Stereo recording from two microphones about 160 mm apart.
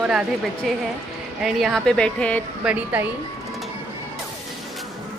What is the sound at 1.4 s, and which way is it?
Speech, centre (ahead or behind).